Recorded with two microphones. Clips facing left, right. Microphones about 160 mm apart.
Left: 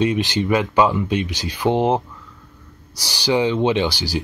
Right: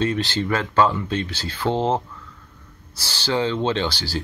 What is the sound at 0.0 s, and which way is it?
Speech, 15° left (ahead or behind).